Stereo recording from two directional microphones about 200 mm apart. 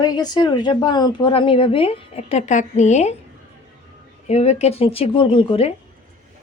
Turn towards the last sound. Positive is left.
turn(degrees=25)  # may be behind; listen again after turning